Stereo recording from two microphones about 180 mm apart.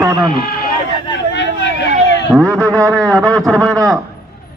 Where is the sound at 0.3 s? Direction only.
55° left (ahead or behind).